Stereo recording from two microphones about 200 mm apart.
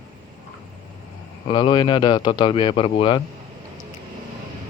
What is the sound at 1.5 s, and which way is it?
Speech, 25° left (ahead or behind).